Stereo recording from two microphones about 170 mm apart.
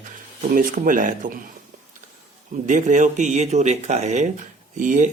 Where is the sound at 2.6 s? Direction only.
45° right (ahead or behind).